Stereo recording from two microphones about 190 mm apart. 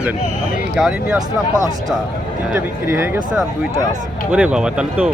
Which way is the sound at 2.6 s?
10° right (ahead or behind).